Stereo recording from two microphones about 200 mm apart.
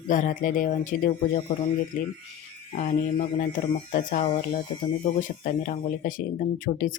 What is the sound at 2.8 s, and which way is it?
Speech, 40° left (ahead or behind).